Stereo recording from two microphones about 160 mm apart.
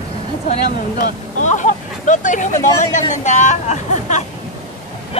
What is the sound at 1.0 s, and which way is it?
Speech, 50° left (ahead or behind).